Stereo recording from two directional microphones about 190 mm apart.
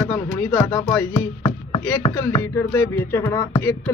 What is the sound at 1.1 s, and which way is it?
Music, 25° left (ahead or behind).